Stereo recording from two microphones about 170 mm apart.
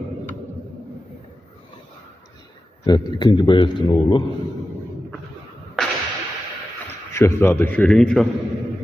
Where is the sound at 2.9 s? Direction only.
25° left (ahead or behind).